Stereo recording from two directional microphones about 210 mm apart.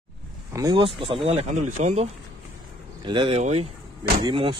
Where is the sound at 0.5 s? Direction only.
15° right (ahead or behind).